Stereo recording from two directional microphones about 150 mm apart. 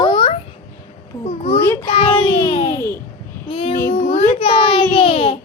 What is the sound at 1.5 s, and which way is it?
Speech, 15° left (ahead or behind).